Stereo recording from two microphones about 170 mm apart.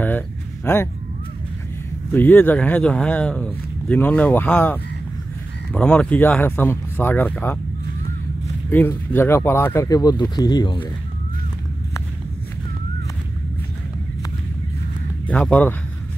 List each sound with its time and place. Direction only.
0.7 s speech: 15° left (ahead or behind)
2.1 s speech: 10° left (ahead or behind)
8.6 s speech: 10° left (ahead or behind); by 10.9 s 25° left (ahead or behind)
15.2 s speech: 10° left (ahead or behind)